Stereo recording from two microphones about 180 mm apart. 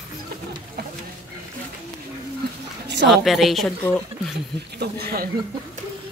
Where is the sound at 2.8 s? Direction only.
75° right (ahead or behind).